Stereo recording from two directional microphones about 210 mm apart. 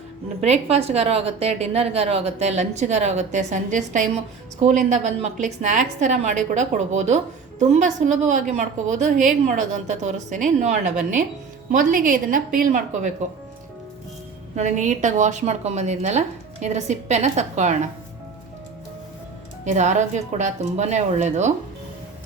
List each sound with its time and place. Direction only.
0.4 s a woman's voice: 30° right (ahead or behind)
14.5 s a woman's voice: 35° right (ahead or behind)
19.7 s a woman's voice: 35° right (ahead or behind)